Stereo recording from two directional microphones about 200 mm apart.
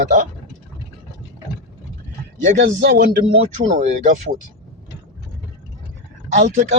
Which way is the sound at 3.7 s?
35° right (ahead or behind).